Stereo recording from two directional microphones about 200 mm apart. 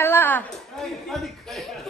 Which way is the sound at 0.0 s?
10° left (ahead or behind).